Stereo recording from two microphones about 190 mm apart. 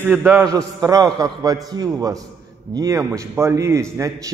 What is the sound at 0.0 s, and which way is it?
A man's voice, 10° right (ahead or behind).